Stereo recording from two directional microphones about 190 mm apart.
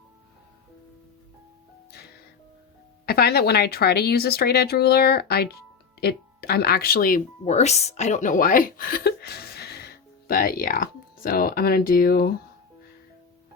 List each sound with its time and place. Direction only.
3.1 s speech: 55° left (ahead or behind)
7.4 s a woman's voice: 35° left (ahead or behind)